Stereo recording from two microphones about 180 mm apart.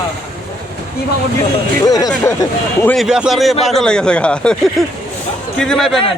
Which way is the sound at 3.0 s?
5° right (ahead or behind).